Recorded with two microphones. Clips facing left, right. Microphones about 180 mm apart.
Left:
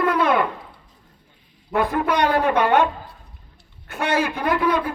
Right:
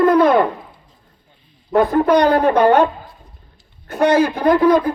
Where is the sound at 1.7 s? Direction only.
40° right (ahead or behind).